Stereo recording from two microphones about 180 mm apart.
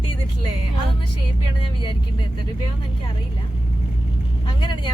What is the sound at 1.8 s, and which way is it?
Speech, 25° left (ahead or behind).